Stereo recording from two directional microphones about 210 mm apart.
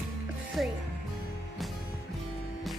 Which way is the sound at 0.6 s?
Centre (ahead or behind).